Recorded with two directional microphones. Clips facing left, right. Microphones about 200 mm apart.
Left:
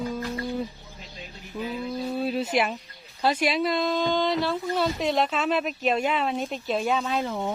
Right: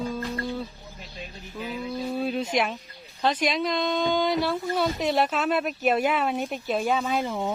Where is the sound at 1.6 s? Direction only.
15° left (ahead or behind).